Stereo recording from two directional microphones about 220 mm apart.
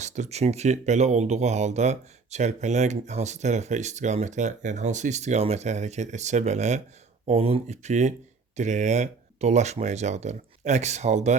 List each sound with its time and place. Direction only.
0.0 s speech: 30° right (ahead or behind)